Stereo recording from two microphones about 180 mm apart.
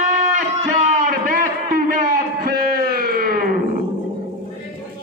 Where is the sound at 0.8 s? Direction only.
50° right (ahead or behind).